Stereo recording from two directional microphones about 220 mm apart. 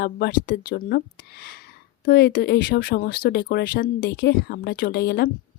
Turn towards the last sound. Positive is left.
turn(degrees=50)  # may be behind; listen again after turning